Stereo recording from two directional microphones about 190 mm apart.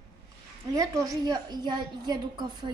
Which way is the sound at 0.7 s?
20° right (ahead or behind).